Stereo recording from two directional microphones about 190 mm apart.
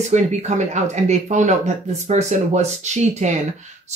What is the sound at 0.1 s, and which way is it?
Speech, 40° right (ahead or behind).